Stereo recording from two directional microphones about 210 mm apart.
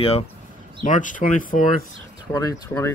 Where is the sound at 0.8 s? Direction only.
35° left (ahead or behind).